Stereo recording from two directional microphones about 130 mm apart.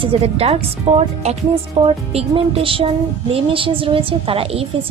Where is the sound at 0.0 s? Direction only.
45° right (ahead or behind).